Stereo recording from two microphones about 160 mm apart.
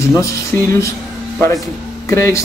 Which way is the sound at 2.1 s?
20° left (ahead or behind).